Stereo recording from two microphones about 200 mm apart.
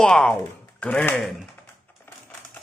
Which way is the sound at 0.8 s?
10° left (ahead or behind).